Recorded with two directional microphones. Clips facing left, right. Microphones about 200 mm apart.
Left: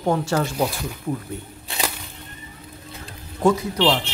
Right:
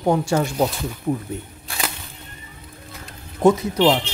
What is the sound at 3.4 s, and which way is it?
Speech, 20° right (ahead or behind).